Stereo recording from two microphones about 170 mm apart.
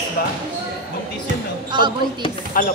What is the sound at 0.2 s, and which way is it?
Speech, 65° left (ahead or behind).